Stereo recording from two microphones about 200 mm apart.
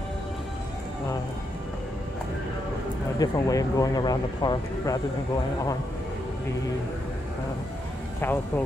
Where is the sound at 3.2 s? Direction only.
15° left (ahead or behind).